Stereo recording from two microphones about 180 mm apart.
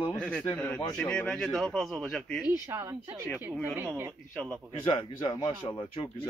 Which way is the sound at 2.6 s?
15° right (ahead or behind).